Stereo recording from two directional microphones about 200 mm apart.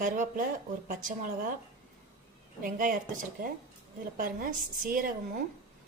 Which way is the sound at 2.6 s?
40° right (ahead or behind).